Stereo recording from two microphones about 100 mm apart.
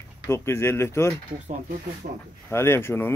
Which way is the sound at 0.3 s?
25° left (ahead or behind).